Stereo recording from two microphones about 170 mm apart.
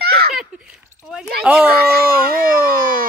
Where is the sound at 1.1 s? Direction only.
5° right (ahead or behind).